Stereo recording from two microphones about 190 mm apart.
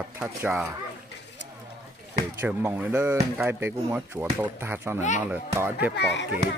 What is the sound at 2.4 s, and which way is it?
Speech, 10° right (ahead or behind).